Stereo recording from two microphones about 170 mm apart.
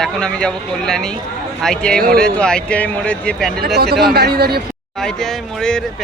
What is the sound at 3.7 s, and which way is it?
Speech, 70° right (ahead or behind).